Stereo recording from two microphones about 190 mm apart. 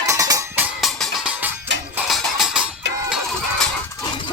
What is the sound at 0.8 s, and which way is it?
Music, centre (ahead or behind).